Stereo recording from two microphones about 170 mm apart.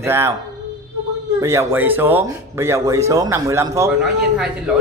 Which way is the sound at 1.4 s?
15° right (ahead or behind).